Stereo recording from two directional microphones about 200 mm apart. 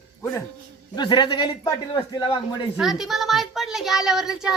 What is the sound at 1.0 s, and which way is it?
A man's voice, 20° left (ahead or behind).